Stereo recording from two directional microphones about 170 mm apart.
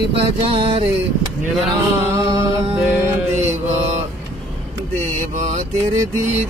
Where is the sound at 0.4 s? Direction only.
35° right (ahead or behind).